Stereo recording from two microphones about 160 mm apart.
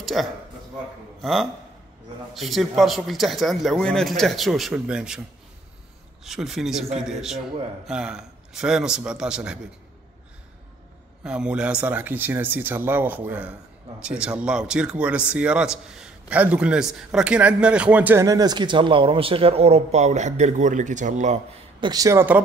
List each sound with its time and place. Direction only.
0.0 s a man's voice: centre (ahead or behind)
6.2 s a man's voice: centre (ahead or behind)
11.2 s speech: 5° right (ahead or behind)
18.2 s speech: 25° right (ahead or behind); by 21.4 s 45° right (ahead or behind)
21.7 s speech: 25° right (ahead or behind)